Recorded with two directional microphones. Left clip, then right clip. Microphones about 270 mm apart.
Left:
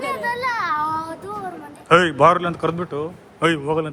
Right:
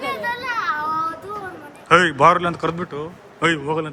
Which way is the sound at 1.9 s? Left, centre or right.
Centre.